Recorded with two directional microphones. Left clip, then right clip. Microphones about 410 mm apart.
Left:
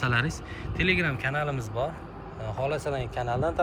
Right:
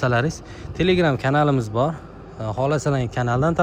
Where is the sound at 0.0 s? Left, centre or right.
Centre.